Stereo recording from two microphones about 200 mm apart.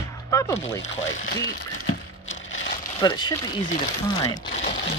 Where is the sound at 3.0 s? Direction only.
20° left (ahead or behind).